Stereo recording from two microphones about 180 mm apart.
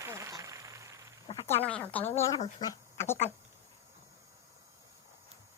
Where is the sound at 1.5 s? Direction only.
10° left (ahead or behind).